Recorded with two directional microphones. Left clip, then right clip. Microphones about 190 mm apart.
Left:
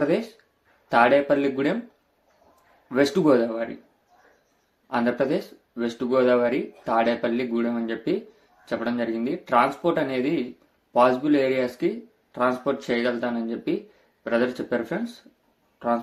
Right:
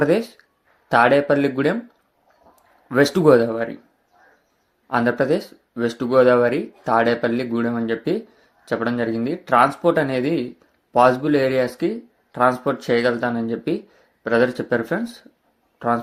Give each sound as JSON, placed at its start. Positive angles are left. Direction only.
{"t": 0.0, "sound": "speech", "side_deg": -45}
{"t": 2.9, "sound": "speech", "side_deg": -45}
{"t": 4.9, "sound": "speech", "side_deg": -40}